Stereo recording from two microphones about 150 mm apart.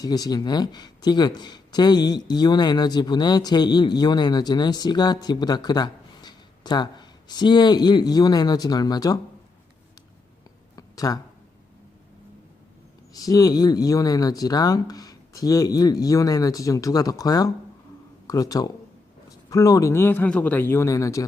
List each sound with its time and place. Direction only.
0.0 s speech: 25° left (ahead or behind)
10.8 s a sound: 25° left (ahead or behind)
13.1 s speech: 25° left (ahead or behind)